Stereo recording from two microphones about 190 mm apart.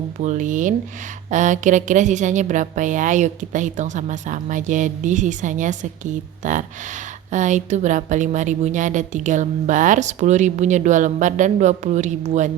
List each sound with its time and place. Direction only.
0.2 s a woman's voice: 40° right (ahead or behind)